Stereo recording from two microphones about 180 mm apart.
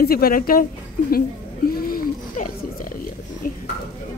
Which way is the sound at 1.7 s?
55° left (ahead or behind).